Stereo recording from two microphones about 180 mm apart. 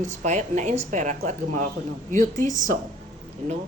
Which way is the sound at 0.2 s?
40° right (ahead or behind).